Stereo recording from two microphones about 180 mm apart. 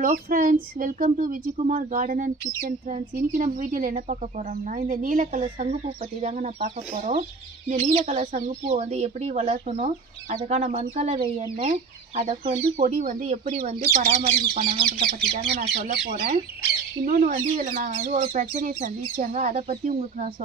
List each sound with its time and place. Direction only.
0.0 s speech: 45° right (ahead or behind)
12.7 s speech: 45° right (ahead or behind)
15.3 s speech: 55° right (ahead or behind)
17.0 s speech: 45° right (ahead or behind)